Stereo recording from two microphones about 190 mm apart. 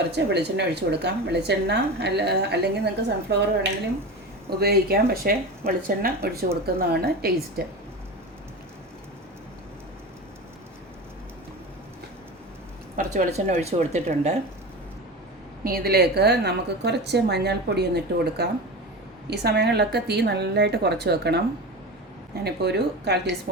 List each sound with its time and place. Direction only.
0.1 s a woman's voice: 65° right (ahead or behind)
13.1 s speech: 35° right (ahead or behind)
15.6 s a woman's voice: 55° right (ahead or behind)
22.4 s a woman's voice: 60° right (ahead or behind)